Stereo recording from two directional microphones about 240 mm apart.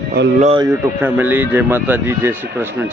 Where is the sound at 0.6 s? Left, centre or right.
Centre.